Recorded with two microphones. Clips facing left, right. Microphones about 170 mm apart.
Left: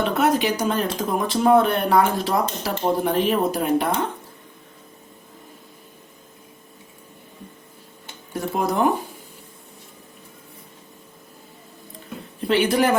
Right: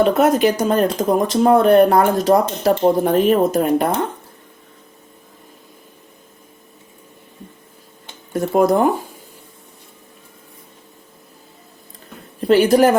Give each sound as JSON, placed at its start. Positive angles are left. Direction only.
{"t": 0.4, "sound": "speech", "side_deg": -50}
{"t": 8.3, "sound": "speech", "side_deg": -50}
{"t": 12.4, "sound": "a woman's voice", "side_deg": -40}